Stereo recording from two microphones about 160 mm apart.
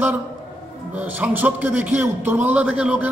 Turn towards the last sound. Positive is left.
turn(degrees=-10)  # may be behind; listen again after turning